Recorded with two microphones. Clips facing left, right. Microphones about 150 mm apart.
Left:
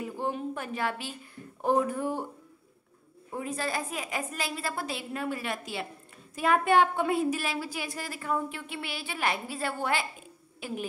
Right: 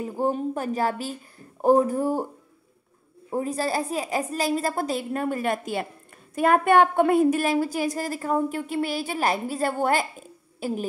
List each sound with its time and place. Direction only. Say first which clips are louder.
0.0 s speech: right 7 dB; 40° right (ahead or behind)
3.3 s a woman's voice: right 7 dB; 35° right (ahead or behind)